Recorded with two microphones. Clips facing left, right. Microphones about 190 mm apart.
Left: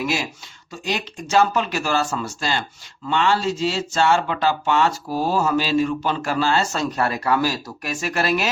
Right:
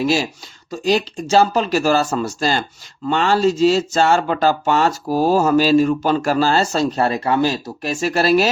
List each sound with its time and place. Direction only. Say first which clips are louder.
0.0 s speech: right 6 dB; 30° right (ahead or behind)